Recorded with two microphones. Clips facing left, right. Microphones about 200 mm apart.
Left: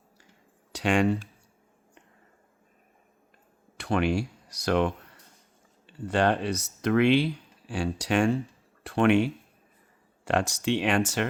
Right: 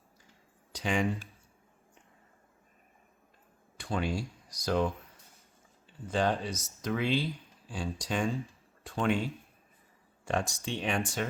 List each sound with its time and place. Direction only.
0.7 s speech: 75° left (ahead or behind)
3.8 s speech: 70° left (ahead or behind)